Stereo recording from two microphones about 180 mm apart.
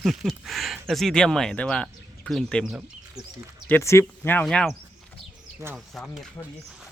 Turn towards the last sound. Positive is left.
turn(degrees=0)  # may be behind; listen again after turning